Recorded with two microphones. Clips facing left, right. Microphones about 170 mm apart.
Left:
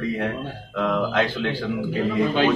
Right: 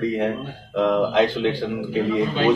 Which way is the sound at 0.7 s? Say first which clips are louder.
Right 4 dB; 15° right (ahead or behind).